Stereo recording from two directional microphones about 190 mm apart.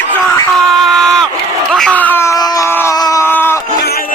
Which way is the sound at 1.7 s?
5° left (ahead or behind).